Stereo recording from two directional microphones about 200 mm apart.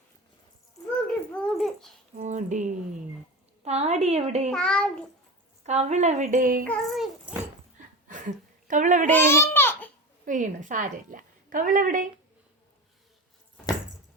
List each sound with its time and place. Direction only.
1.3 s dog: 5° left (ahead or behind)
2.1 s a woman's voice: 35° right (ahead or behind)
4.4 s a child's voice: 5° left (ahead or behind)
5.6 s a woman's voice: 35° right (ahead or behind)
6.7 s speech: centre (ahead or behind)
8.0 s a sound: 40° right (ahead or behind)
9.0 s babbling: 10° left (ahead or behind)
10.2 s a woman's voice: 40° right (ahead or behind)